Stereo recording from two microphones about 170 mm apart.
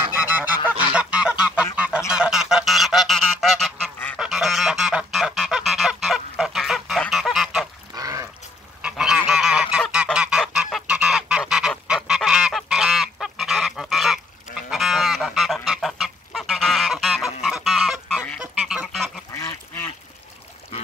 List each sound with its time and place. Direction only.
0.0 s goose: 10° right (ahead or behind)
7.9 s a sound: 20° right (ahead or behind)
8.8 s goose: 5° right (ahead or behind)
19.3 s duck: 20° left (ahead or behind)